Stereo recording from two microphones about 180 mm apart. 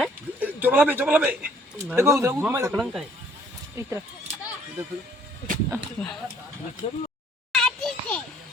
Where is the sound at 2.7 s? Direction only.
Centre (ahead or behind).